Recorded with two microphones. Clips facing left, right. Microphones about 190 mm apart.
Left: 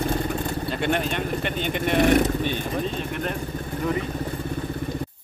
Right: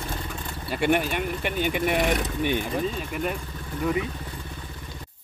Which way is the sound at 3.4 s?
45° left (ahead or behind).